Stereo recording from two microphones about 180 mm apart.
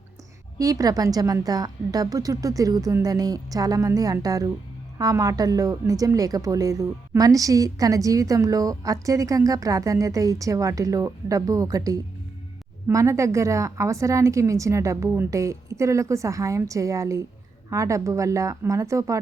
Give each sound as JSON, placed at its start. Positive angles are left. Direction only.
{"t": 0.6, "sound": "a woman's voice", "side_deg": -20}